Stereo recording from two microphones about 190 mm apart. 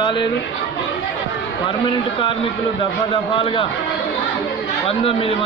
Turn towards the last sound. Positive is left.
turn(degrees=30)  # may be behind; listen again after turning